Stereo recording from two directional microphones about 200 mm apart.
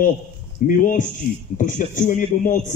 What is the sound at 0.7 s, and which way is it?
A man's voice, 40° left (ahead or behind).